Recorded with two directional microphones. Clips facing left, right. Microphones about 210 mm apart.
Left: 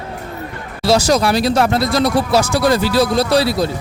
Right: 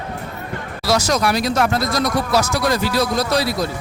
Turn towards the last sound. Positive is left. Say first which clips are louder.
# left 4 dB
turn(degrees=30)  # may be behind; listen again after turning